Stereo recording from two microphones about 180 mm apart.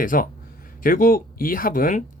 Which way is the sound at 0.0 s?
50° left (ahead or behind).